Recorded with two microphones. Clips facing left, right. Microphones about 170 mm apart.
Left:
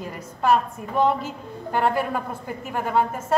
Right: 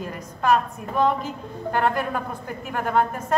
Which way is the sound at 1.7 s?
10° left (ahead or behind).